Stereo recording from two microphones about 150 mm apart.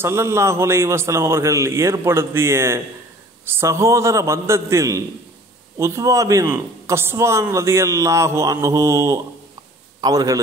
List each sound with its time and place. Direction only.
0.0 s a man's voice: 20° right (ahead or behind)